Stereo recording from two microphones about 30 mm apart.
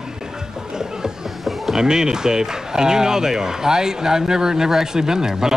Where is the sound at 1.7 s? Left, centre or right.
Right.